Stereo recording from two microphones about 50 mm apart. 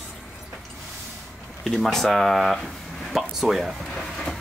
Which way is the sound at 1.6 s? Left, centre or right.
Centre.